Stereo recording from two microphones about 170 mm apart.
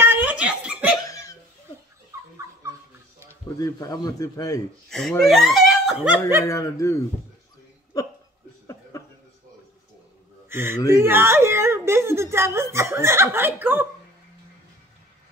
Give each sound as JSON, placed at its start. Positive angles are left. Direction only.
{"t": 0.0, "sound": "giggle", "side_deg": -10}
{"t": 1.0, "sound": "cough", "side_deg": 20}
{"t": 3.5, "sound": "a man's voice", "side_deg": 20}
{"t": 4.9, "sound": "speech", "side_deg": 5}
{"t": 6.4, "sound": "a man's voice", "side_deg": 20}
{"t": 10.5, "sound": "speech", "side_deg": -15}
{"t": 11.0, "sound": "whimper", "side_deg": -15}
{"t": 12.7, "sound": "speech", "side_deg": -15}